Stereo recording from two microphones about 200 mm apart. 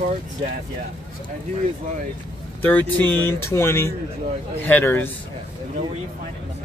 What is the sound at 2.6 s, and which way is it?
Speech, 10° left (ahead or behind).